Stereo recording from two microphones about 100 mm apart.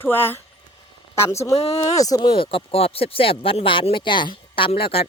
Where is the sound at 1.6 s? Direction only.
90° left.